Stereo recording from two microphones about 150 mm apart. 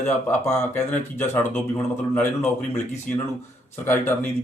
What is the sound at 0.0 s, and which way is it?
Speech, 15° left (ahead or behind).